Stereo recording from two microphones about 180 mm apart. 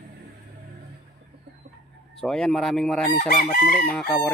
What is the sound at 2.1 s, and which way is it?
Crowing, 5° left (ahead or behind).